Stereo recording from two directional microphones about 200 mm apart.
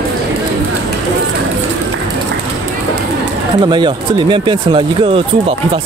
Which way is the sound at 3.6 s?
25° right (ahead or behind).